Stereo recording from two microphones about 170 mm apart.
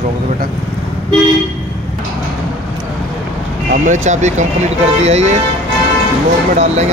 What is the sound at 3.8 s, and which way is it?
Speech, 45° right (ahead or behind).